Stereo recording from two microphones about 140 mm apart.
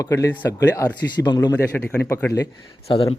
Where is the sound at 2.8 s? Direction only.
40° left (ahead or behind).